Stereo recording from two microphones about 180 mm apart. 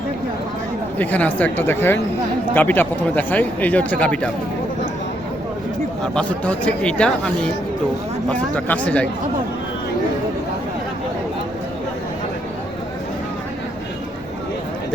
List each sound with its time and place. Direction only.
0.9 s speech: 10° left (ahead or behind)
6.1 s speech: 5° left (ahead or behind)
8.3 s speech: 10° left (ahead or behind)